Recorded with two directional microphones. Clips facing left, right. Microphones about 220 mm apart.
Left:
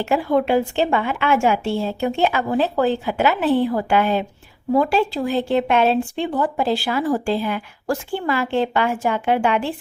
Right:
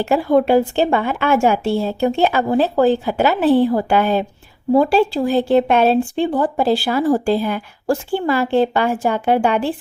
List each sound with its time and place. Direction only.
0.0 s a woman's voice: 35° right (ahead or behind)